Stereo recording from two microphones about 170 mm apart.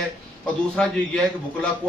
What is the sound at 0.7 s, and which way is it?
Speech, 5° left (ahead or behind).